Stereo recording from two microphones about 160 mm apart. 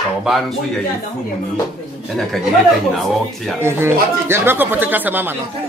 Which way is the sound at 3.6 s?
15° right (ahead or behind).